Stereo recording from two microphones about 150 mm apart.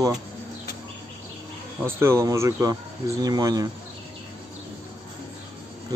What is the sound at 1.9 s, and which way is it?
Speech, 15° right (ahead or behind).